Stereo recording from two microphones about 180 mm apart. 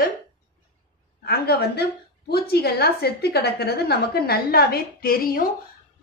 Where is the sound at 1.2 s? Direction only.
60° left (ahead or behind).